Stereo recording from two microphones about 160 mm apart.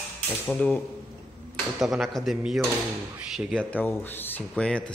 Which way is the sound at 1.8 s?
Centre (ahead or behind).